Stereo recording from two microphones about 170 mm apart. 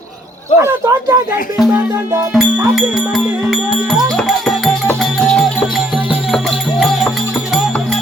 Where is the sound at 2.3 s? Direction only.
Centre (ahead or behind).